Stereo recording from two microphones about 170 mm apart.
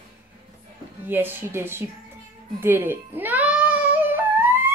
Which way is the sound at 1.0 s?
10° right (ahead or behind).